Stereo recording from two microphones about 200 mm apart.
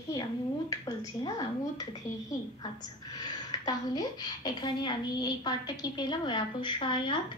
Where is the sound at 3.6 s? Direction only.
20° left (ahead or behind).